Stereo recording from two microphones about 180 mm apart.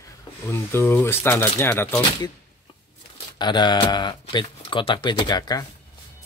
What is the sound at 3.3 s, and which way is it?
Speech, 25° left (ahead or behind).